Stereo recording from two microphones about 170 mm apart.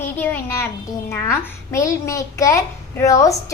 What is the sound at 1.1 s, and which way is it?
A woman's voice, 15° left (ahead or behind).